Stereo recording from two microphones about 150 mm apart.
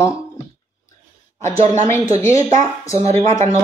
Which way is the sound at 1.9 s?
20° left (ahead or behind).